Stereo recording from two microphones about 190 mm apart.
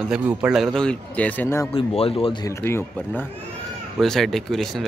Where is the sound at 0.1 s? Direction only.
5° right (ahead or behind).